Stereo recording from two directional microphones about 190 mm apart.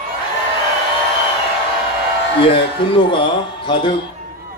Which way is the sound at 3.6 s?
25° left (ahead or behind).